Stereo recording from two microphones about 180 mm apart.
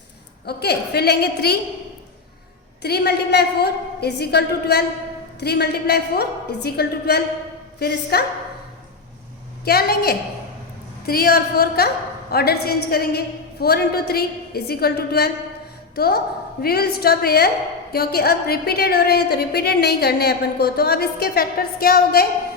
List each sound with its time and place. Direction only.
0.4 s a woman's voice: 65° left (ahead or behind)
2.8 s a woman's voice: 65° left (ahead or behind)
9.6 s a woman's voice: 60° left (ahead or behind)